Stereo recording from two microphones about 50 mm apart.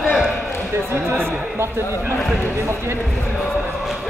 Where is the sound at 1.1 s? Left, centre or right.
Right.